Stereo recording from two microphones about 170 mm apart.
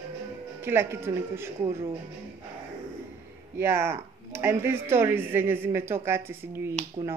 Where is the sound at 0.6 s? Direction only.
15° right (ahead or behind).